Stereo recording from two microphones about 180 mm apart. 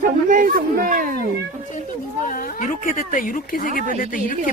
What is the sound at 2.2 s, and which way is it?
Speech, 50° left (ahead or behind).